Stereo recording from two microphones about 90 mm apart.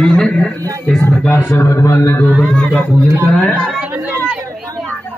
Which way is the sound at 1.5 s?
35° left (ahead or behind).